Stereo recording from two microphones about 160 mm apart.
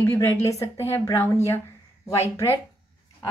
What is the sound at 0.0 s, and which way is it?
A woman's voice, 15° left (ahead or behind).